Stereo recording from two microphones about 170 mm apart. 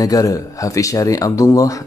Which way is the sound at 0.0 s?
20° left (ahead or behind).